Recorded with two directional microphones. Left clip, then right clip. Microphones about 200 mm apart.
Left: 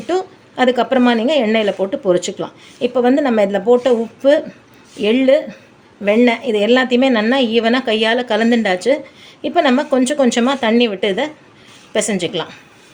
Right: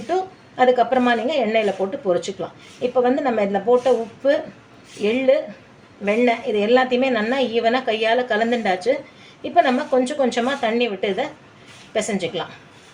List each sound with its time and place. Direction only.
0.1 s a woman's voice: 50° left (ahead or behind)